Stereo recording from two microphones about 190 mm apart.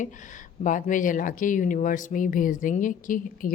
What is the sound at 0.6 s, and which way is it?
Speech, 45° left (ahead or behind).